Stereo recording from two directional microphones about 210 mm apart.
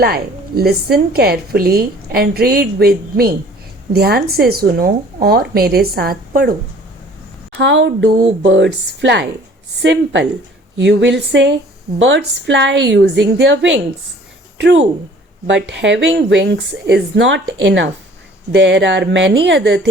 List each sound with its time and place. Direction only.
0.0 s a woman's voice: 50° right (ahead or behind)
7.5 s speech: 60° right (ahead or behind)
15.7 s speech: 60° right (ahead or behind)